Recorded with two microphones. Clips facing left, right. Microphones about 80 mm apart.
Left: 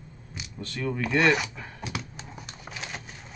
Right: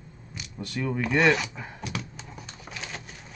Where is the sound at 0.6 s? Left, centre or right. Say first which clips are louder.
Right 1 dB; centre.